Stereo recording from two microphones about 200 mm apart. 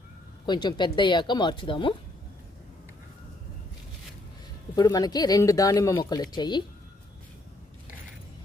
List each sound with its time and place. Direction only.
0.4 s speech: 20° left (ahead or behind)
4.7 s speech: 20° left (ahead or behind)